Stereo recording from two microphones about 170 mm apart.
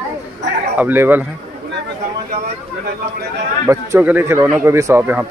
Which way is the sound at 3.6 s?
10° right (ahead or behind).